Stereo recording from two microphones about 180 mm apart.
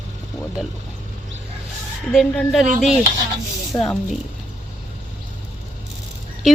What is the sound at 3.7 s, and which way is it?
Speech, 20° left (ahead or behind).